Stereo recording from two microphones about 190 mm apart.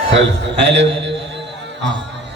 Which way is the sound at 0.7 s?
70° right (ahead or behind).